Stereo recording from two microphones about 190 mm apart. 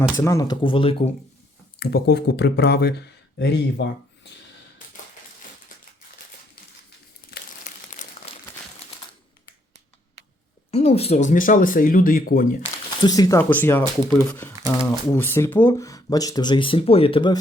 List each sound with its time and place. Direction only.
0.2 s speech: 15° left (ahead or behind)
1.8 s speech: 60° left (ahead or behind)
7.6 s crumpling: 40° left (ahead or behind)
10.7 s speech: 35° left (ahead or behind)
13.0 s speech: 20° left (ahead or behind)